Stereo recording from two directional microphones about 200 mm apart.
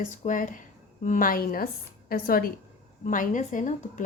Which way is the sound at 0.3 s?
40° left (ahead or behind).